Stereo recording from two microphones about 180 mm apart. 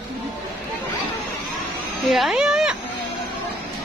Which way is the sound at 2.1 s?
Centre (ahead or behind).